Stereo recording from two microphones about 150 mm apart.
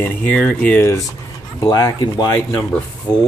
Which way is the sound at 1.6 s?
25° left (ahead or behind).